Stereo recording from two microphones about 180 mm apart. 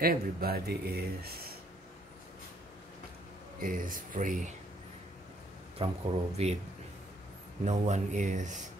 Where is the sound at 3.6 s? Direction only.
50° right (ahead or behind).